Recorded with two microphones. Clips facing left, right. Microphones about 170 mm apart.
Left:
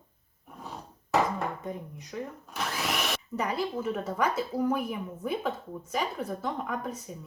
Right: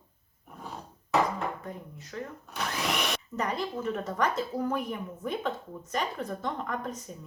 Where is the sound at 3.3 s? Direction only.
10° left (ahead or behind).